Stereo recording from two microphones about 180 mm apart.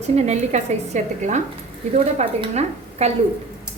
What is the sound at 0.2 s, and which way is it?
A woman's voice, 40° right (ahead or behind).